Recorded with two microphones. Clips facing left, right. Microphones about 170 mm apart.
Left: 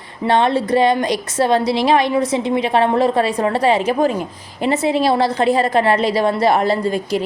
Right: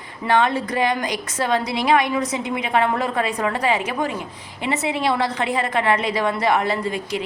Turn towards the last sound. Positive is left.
turn(degrees=40)  # may be behind; listen again after turning